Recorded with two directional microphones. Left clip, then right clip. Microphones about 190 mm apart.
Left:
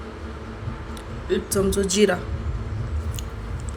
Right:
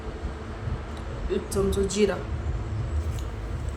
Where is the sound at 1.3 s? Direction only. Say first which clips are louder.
Left 4 dB; 20° left (ahead or behind).